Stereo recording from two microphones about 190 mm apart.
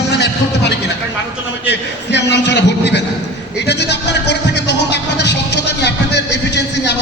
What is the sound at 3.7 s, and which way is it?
Music, 65° left (ahead or behind).